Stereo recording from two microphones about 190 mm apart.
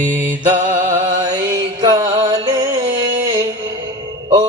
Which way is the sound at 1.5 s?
20° right (ahead or behind).